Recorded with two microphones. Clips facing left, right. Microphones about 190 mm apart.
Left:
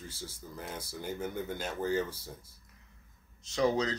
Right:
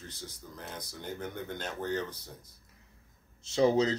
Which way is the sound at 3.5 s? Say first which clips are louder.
Right 4 dB; 25° right (ahead or behind).